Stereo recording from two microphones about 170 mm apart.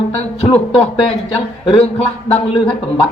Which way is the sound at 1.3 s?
30° left (ahead or behind).